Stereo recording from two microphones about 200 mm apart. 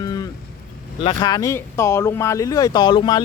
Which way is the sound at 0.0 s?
20° left (ahead or behind).